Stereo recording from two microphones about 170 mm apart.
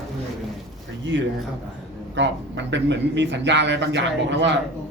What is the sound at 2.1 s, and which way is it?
Speech, 90° right.